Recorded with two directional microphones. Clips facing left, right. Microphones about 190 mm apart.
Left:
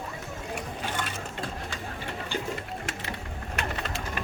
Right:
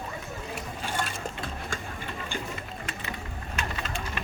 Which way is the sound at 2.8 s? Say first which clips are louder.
Left 1 dB; 65° left (ahead or behind).